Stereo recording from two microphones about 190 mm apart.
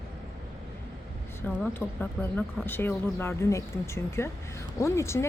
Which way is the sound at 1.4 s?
10° left (ahead or behind).